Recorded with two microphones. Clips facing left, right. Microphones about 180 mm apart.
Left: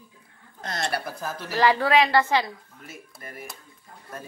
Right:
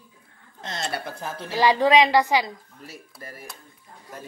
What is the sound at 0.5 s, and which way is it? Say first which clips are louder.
Speech: left 2 dB; 25° right (ahead or behind).